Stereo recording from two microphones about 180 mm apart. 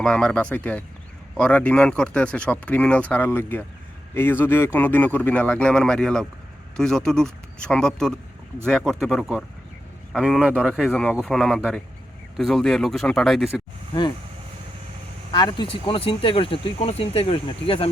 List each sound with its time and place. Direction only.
0.0 s speech: 5° left (ahead or behind)
15.3 s speech: 25° left (ahead or behind)